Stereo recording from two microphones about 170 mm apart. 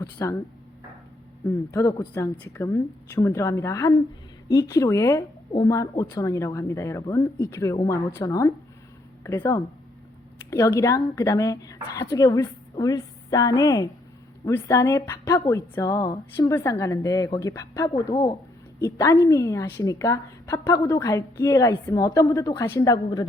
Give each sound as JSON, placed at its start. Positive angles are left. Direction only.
{"t": 0.0, "sound": "speech", "side_deg": 15}
{"t": 1.5, "sound": "a woman's voice", "side_deg": 15}